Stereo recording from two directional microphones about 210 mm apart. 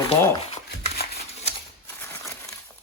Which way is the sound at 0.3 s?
30° left (ahead or behind).